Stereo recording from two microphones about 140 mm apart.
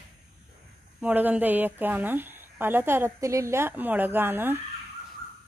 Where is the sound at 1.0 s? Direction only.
10° right (ahead or behind).